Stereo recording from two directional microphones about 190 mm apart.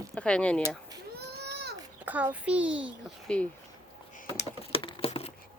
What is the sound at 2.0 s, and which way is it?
A child's voice, 10° right (ahead or behind).